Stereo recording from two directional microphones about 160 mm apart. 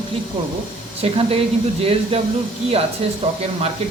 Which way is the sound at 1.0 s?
40° right (ahead or behind).